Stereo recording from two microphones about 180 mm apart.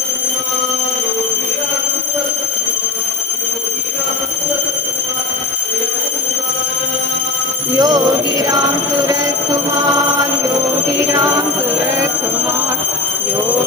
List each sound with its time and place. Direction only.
7.8 s jingle bell: 20° right (ahead or behind)
11.0 s music: 15° right (ahead or behind)